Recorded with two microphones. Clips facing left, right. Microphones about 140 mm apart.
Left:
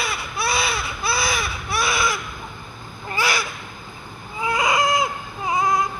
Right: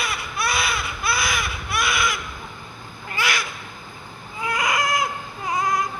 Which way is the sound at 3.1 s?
35° left (ahead or behind).